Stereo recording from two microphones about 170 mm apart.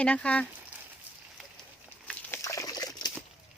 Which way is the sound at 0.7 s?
10° right (ahead or behind).